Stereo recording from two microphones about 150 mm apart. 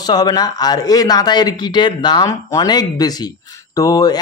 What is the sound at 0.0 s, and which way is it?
Speech, 25° left (ahead or behind).